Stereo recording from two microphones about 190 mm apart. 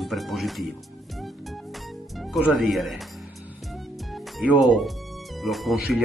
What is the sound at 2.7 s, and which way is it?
Speech, centre (ahead or behind).